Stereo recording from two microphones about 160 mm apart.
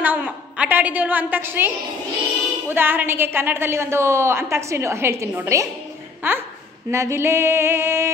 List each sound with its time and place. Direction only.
0.0 s a woman's voice: 10° right (ahead or behind)
2.7 s a woman's voice: 15° right (ahead or behind)